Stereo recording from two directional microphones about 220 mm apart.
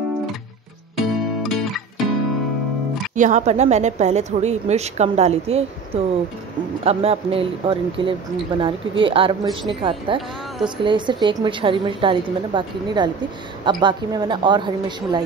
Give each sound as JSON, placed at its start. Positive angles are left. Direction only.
{"t": 0.9, "sound": "music", "side_deg": 0}
{"t": 3.2, "sound": "a woman's voice", "side_deg": -35}